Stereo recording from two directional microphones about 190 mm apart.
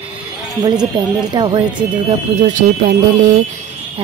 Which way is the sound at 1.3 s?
25° right (ahead or behind).